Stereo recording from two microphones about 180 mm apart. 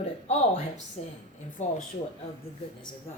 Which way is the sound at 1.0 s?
40° left (ahead or behind).